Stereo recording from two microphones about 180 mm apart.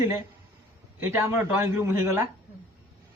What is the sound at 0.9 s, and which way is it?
A man's voice, 10° right (ahead or behind).